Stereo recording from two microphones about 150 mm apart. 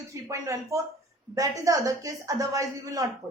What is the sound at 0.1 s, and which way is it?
Speech, 20° right (ahead or behind).